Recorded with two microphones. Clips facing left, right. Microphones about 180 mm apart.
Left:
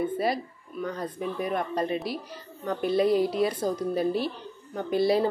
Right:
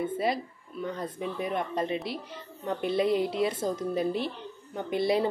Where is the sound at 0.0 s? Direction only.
20° right (ahead or behind).